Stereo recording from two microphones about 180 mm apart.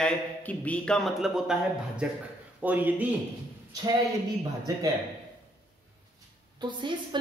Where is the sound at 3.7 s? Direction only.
20° right (ahead or behind).